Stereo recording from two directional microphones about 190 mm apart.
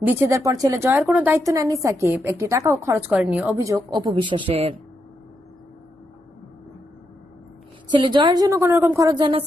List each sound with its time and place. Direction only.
0.0 s a woman's voice: 15° right (ahead or behind)
4.0 s a woman's voice: 25° right (ahead or behind)
7.9 s a woman's voice: 25° right (ahead or behind)